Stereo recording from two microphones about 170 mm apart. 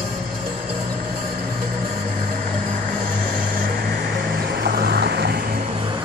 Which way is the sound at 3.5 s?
60° right (ahead or behind).